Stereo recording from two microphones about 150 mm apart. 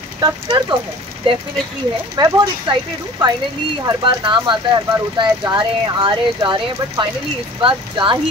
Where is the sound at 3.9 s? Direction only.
30° right (ahead or behind).